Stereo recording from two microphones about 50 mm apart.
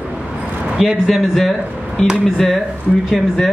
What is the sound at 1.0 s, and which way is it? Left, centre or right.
Speech, centre.